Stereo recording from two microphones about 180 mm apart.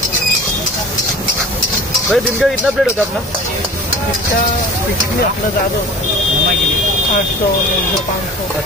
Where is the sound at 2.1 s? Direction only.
5° right (ahead or behind).